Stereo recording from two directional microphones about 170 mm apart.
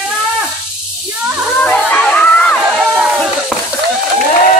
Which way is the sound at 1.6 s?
10° left (ahead or behind).